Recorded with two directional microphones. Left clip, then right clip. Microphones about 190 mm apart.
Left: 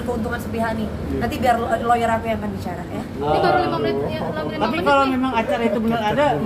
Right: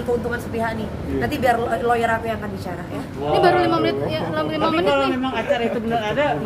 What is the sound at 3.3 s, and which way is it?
Speech, 40° right (ahead or behind).